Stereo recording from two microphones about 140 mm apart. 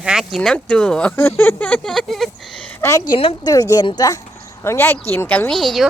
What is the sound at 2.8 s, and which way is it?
Speech, 20° left (ahead or behind).